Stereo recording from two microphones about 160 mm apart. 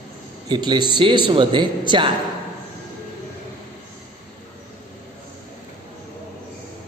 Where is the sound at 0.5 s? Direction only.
25° right (ahead or behind).